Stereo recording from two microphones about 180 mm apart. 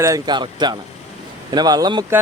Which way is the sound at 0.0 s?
20° right (ahead or behind).